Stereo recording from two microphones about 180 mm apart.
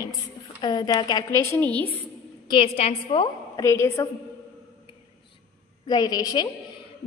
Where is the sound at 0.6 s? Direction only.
20° left (ahead or behind).